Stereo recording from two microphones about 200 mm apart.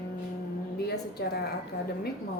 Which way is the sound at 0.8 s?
55° left (ahead or behind).